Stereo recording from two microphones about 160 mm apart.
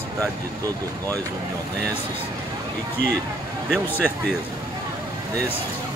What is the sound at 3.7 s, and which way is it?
Speech, 10° left (ahead or behind).